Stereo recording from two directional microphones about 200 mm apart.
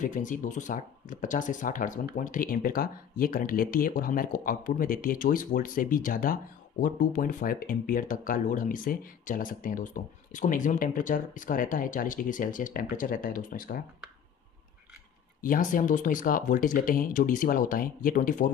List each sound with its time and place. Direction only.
0.0 s speech: 40° left (ahead or behind)
15.4 s speech: 40° left (ahead or behind)